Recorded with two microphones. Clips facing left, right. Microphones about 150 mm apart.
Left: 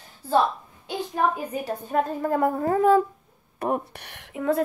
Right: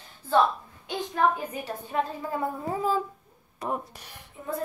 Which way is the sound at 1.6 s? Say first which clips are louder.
Left 5 dB; 50° left (ahead or behind).